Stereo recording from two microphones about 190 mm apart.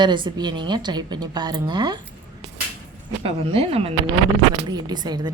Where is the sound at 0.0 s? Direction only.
25° right (ahead or behind).